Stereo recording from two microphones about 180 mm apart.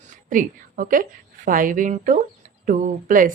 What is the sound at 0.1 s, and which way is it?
A woman's voice, 45° right (ahead or behind).